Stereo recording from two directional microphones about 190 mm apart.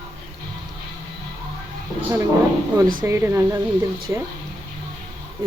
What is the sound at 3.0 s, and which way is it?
Speech, 15° right (ahead or behind).